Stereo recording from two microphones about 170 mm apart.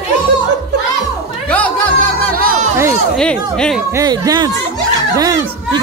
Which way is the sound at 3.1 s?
5° left (ahead or behind).